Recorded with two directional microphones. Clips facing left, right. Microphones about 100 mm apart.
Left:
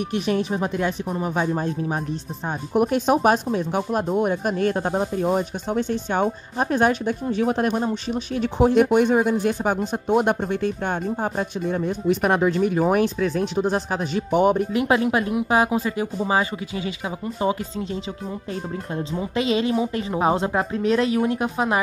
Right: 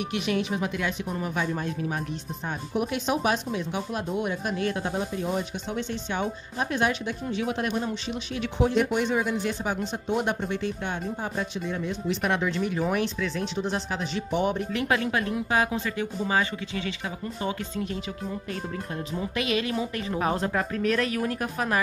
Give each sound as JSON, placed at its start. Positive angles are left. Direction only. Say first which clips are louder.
{"t": 0.1, "sound": "speech", "louder": "left 5 dB", "side_deg": 40}
{"t": 2.7, "sound": "speech", "louder": "left 8 dB", "side_deg": 45}
{"t": 14.7, "sound": "speech", "louder": "left 6 dB", "side_deg": 25}